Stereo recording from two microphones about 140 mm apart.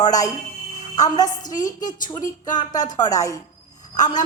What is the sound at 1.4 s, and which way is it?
A woman's voice, 65° left (ahead or behind).